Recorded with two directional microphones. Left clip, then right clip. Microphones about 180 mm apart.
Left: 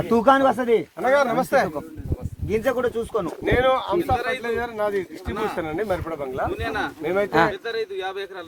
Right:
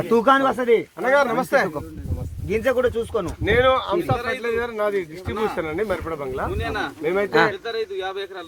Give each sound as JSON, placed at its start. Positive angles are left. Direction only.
{"t": 0.1, "sound": "speech", "side_deg": 65}
{"t": 2.5, "sound": "speech", "side_deg": 80}
{"t": 6.7, "sound": "speech", "side_deg": 0}
{"t": 7.0, "sound": "speech", "side_deg": 55}
{"t": 7.5, "sound": "speech", "side_deg": 0}